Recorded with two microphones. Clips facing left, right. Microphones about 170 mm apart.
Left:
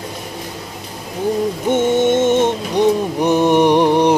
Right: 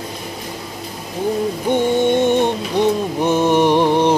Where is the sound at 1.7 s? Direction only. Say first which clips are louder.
Left 1 dB; 20° left (ahead or behind).